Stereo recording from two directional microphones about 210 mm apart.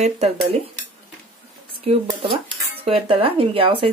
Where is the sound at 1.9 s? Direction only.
25° right (ahead or behind).